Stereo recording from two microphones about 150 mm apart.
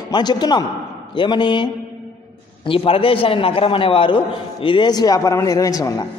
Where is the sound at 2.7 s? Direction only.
40° left (ahead or behind).